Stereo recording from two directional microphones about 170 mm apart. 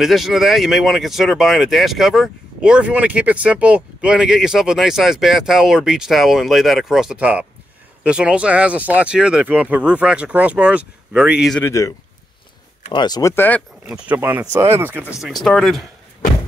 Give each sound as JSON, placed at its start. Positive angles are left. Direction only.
{"t": 0.0, "sound": "speech", "side_deg": 0}
{"t": 11.6, "sound": "speech", "side_deg": 20}
{"t": 12.9, "sound": "speech", "side_deg": 25}
{"t": 13.8, "sound": "speech", "side_deg": -5}
{"t": 15.2, "sound": "speech", "side_deg": 0}